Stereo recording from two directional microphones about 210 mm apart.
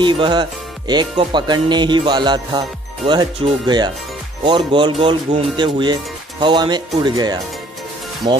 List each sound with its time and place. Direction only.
0.0 s speech: 20° right (ahead or behind)